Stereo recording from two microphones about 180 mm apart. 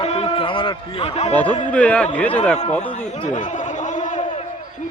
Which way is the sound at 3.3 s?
45° left (ahead or behind).